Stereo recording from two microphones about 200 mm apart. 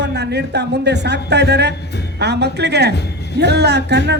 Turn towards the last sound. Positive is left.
turn(degrees=-55)  # may be behind; listen again after turning